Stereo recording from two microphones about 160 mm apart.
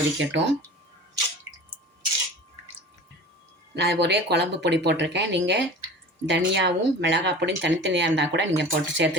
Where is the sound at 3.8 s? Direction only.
90° right.